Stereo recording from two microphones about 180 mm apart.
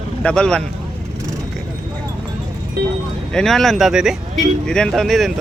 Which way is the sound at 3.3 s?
5° left (ahead or behind).